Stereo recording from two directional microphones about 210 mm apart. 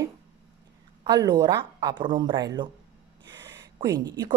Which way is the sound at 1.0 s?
20° right (ahead or behind).